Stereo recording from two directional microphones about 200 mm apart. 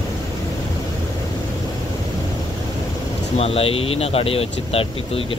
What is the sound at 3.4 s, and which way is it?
Speech, 30° left (ahead or behind).